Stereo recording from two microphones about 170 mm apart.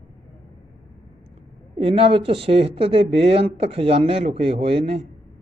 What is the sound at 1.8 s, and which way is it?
Speech, 35° right (ahead or behind).